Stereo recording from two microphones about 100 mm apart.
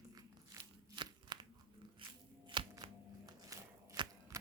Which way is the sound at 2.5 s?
55° right (ahead or behind).